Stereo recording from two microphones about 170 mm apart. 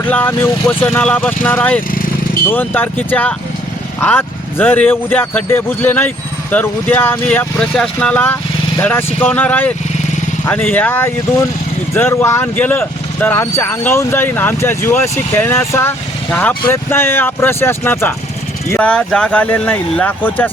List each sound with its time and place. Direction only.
0.0 s speech: 10° left (ahead or behind)